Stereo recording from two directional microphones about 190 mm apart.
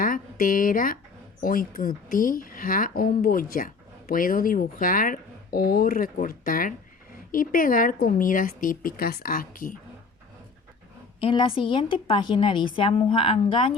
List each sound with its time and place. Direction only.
0.0 s speech: 45° left (ahead or behind)
11.2 s a woman's voice: 30° left (ahead or behind)